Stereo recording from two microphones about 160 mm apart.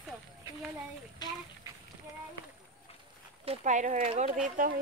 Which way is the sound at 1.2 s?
25° left (ahead or behind).